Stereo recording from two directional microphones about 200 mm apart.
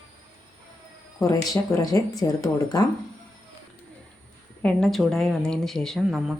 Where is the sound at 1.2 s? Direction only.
15° left (ahead or behind).